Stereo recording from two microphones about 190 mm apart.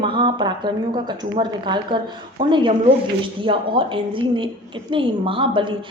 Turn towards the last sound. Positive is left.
turn(degrees=-25)  # may be behind; listen again after turning